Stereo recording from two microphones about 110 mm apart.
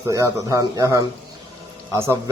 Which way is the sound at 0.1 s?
30° right (ahead or behind).